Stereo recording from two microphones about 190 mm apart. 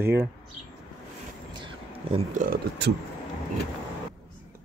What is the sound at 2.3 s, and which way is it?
Speech, 50° right (ahead or behind).